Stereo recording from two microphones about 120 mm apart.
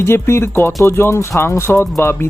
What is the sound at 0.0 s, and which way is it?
Speech, 20° left (ahead or behind).